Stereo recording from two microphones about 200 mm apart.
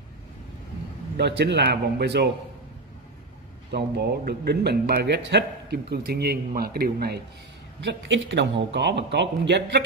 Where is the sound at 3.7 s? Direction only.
55° right (ahead or behind).